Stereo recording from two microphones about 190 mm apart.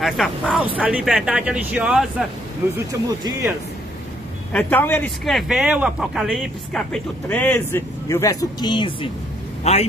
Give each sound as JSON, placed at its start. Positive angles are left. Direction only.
{"t": 0.0, "sound": "speech", "side_deg": 0}
{"t": 2.9, "sound": "speech", "side_deg": -20}
{"t": 4.5, "sound": "speech", "side_deg": 10}